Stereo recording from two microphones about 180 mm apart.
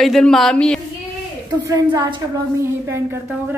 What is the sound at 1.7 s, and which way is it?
Speech, 15° right (ahead or behind).